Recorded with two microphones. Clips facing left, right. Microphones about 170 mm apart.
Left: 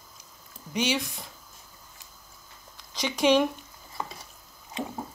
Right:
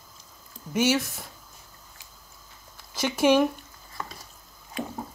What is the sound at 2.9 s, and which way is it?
Speech, 5° right (ahead or behind).